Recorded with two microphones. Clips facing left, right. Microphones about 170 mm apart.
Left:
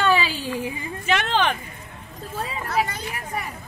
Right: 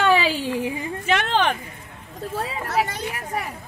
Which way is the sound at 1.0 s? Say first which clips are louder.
Right 1 dB; 50° right (ahead or behind).